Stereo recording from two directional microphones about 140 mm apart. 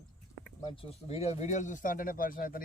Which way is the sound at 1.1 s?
45° left (ahead or behind).